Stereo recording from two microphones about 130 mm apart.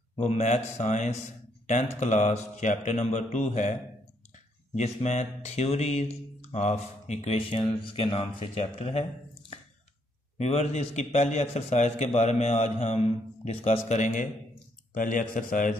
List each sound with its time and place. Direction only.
0.2 s speech: 65° left (ahead or behind)
4.7 s speech: 65° left (ahead or behind)
10.3 s speech: 55° left (ahead or behind)
15.0 s speech: 90° left